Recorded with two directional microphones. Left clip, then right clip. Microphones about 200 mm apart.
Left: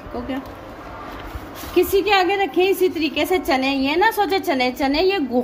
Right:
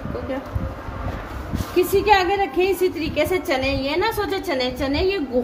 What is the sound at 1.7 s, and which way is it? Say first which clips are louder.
A woman's voice: even; 40° left (ahead or behind).